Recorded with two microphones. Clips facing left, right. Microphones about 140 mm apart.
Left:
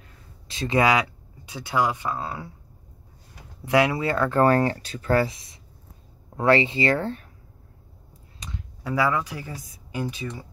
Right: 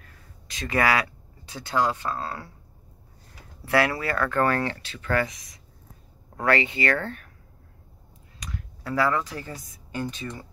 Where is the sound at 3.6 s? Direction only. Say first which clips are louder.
Left 3 dB; 15° left (ahead or behind).